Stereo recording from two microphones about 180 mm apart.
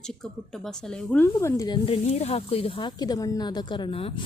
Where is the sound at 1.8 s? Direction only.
35° left (ahead or behind).